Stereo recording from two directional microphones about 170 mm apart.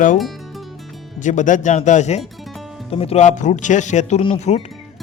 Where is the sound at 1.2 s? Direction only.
45° left (ahead or behind).